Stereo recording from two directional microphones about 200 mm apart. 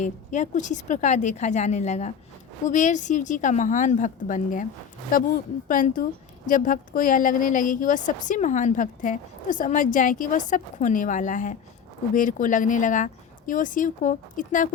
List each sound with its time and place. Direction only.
0.0 s a woman's voice: 40° left (ahead or behind)